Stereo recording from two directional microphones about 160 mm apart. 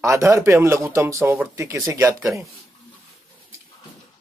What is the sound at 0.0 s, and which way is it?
Speech, 20° right (ahead or behind).